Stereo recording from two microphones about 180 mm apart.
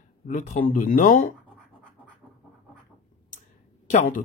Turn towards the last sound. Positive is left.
turn(degrees=50)  # may be behind; listen again after turning